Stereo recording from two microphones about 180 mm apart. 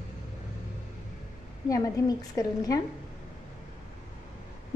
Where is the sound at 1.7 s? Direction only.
20° left (ahead or behind).